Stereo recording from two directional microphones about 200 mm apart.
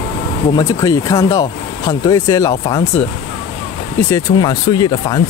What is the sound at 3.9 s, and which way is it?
Speech, 15° left (ahead or behind).